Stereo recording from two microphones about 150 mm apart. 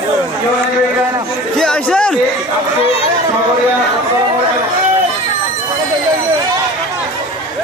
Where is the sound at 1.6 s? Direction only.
5° left (ahead or behind).